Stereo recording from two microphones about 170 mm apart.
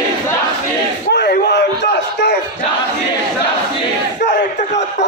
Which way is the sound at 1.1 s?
85° left.